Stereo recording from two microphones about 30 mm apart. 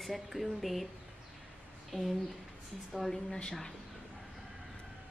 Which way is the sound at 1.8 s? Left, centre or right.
Centre.